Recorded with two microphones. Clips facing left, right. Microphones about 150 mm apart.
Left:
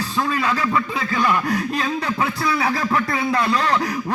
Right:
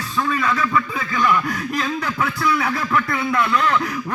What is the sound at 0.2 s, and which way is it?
A man's voice, 30° left (ahead or behind).